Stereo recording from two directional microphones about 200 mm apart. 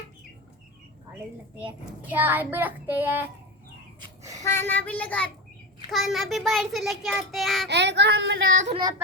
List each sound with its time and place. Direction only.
1.5 s a child's voice: 5° right (ahead or behind)
4.4 s a child's voice: 10° left (ahead or behind)
7.7 s speech: 60° right (ahead or behind)
8.6 s child singing: 25° right (ahead or behind)